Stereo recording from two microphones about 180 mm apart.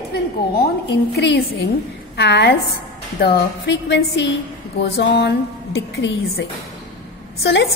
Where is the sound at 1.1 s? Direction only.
70° left (ahead or behind).